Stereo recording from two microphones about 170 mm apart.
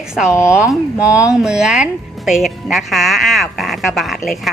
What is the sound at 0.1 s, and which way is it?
A woman's voice, 5° right (ahead or behind).